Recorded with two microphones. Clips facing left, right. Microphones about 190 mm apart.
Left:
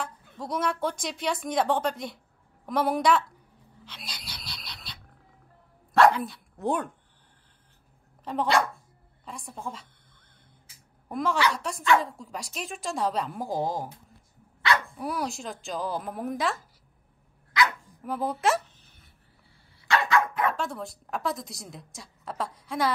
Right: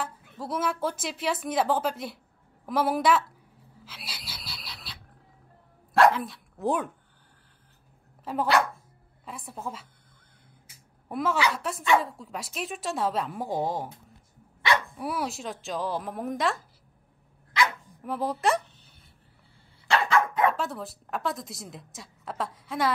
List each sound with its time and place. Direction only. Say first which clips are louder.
0.0 s a woman's voice: right 1 dB; 5° right (ahead or behind)
3.8 s a sound: even; 5° right (ahead or behind)
5.9 s speech: left 1 dB; centre (ahead or behind)
8.2 s a woman's voice: even; 5° right (ahead or behind)
11.1 s a woman's voice: even; 5° right (ahead or behind)
15.0 s a woman's voice: even; centre (ahead or behind)
18.0 s a woman's voice: even; centre (ahead or behind)
20.1 s dog: right 3 dB; 25° right (ahead or behind)
20.5 s a woman's voice: even; centre (ahead or behind)